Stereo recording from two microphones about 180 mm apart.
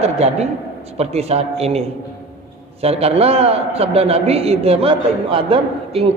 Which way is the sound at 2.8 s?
35° right (ahead or behind).